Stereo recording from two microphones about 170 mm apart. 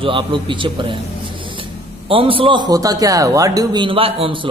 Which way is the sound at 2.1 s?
30° right (ahead or behind).